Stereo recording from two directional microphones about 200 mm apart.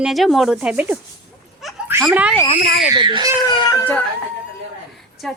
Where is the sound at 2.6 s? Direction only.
45° left (ahead or behind).